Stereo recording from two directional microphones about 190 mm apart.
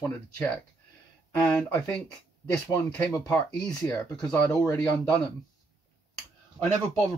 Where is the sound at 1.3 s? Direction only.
10° left (ahead or behind).